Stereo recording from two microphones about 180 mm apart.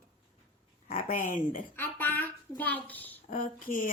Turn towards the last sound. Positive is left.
turn(degrees=45)  # may be behind; listen again after turning